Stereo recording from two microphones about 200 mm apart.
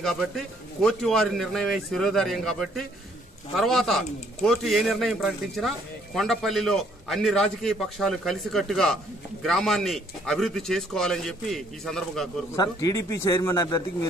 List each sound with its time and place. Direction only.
0.0 s speech: centre (ahead or behind)
12.5 s a man's voice: 20° left (ahead or behind)